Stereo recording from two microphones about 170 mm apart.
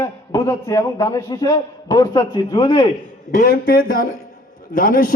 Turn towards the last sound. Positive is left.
turn(degrees=55)  # may be behind; listen again after turning